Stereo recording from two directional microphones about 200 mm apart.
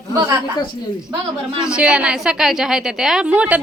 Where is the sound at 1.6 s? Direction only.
5° right (ahead or behind).